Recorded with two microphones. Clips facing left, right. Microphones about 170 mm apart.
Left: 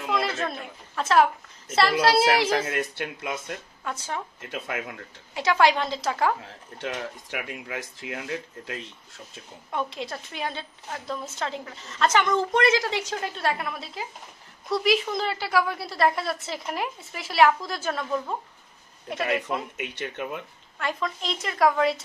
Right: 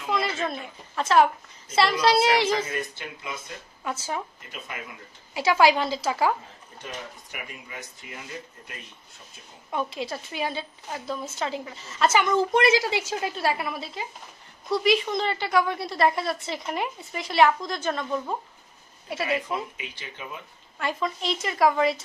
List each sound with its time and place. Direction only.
0.1 s a sound: centre (ahead or behind)
0.9 s a woman's voice: centre (ahead or behind)
2.6 s speech: 75° left (ahead or behind)
3.8 s speech: 5° right (ahead or behind)
4.4 s speech: 75° left (ahead or behind)
5.3 s a woman's voice: 5° right (ahead or behind)
6.8 s speech: 80° left
9.7 s a woman's voice: 5° right (ahead or behind)
19.8 s speech: 65° left (ahead or behind)
20.8 s a woman's voice: centre (ahead or behind)